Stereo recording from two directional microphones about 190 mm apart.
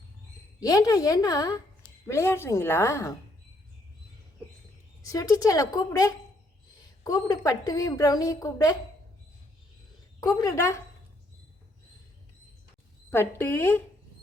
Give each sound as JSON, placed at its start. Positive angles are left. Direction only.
{"t": 0.6, "sound": "a woman's voice", "side_deg": 20}
{"t": 5.0, "sound": "a woman's voice", "side_deg": 15}
{"t": 10.2, "sound": "a woman's voice", "side_deg": 15}
{"t": 13.1, "sound": "a woman's voice", "side_deg": 10}